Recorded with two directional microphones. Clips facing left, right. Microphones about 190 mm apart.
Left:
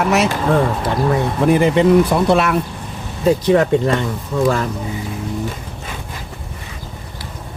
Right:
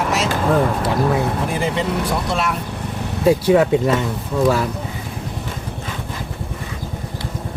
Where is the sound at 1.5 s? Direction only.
60° left (ahead or behind).